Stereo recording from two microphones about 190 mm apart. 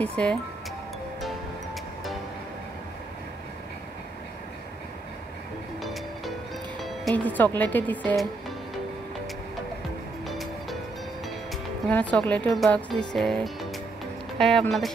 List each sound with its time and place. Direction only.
0.0 s speech: 5° left (ahead or behind)
6.8 s speech: centre (ahead or behind)
10.2 s music: centre (ahead or behind)
11.9 s speech: 5° left (ahead or behind)